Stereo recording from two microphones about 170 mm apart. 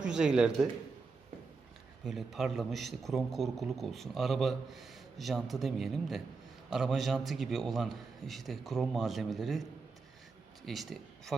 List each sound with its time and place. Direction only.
0.0 s a man's voice: 5° right (ahead or behind)
2.0 s a man's voice: centre (ahead or behind)
10.7 s a man's voice: centre (ahead or behind)